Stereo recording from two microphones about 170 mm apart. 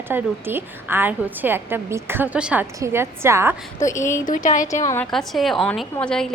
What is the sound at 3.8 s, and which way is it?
Speech, 15° left (ahead or behind).